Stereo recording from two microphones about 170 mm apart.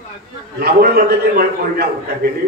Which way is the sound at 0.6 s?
65° right (ahead or behind).